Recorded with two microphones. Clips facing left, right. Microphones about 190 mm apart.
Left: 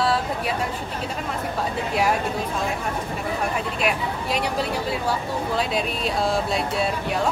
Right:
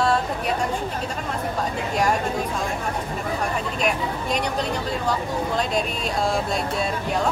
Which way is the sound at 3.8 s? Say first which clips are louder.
Right 1 dB; 5° left (ahead or behind).